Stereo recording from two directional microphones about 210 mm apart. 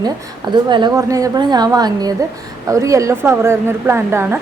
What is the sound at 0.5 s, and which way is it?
A woman's voice, 20° right (ahead or behind).